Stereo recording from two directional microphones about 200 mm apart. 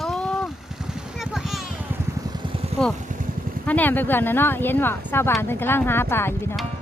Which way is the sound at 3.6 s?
10° left (ahead or behind).